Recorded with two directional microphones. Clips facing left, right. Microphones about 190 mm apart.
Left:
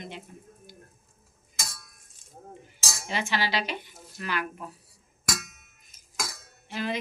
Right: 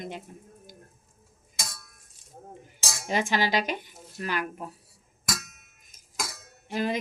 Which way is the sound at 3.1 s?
45° right (ahead or behind).